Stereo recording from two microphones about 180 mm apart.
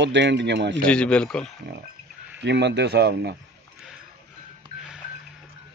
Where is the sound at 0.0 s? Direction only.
75° right (ahead or behind).